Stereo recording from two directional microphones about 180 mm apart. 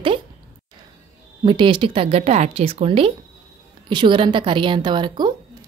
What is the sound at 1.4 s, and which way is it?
Speech, 30° right (ahead or behind).